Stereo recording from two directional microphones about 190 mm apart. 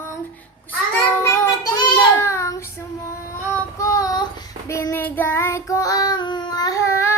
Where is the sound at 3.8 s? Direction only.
15° left (ahead or behind).